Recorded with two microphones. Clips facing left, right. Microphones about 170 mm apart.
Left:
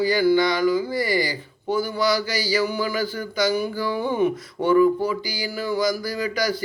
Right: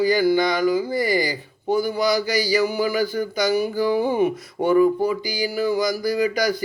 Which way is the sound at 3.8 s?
45° right (ahead or behind).